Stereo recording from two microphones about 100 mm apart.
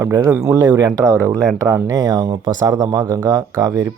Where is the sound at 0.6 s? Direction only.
35° right (ahead or behind).